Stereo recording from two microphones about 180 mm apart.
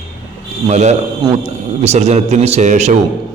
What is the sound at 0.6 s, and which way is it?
A man's voice, 40° right (ahead or behind).